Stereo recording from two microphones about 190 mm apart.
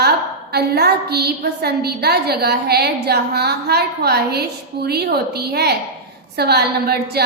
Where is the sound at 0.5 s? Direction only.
55° right (ahead or behind).